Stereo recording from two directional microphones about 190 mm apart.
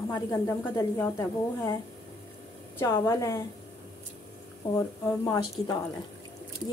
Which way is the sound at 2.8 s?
15° left (ahead or behind).